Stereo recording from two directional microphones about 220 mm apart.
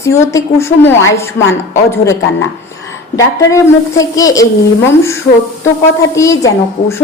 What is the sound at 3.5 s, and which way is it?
Speech, 15° left (ahead or behind).